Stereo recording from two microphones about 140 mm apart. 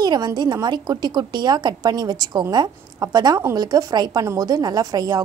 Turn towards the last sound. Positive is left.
turn(degrees=-25)  # may be behind; listen again after turning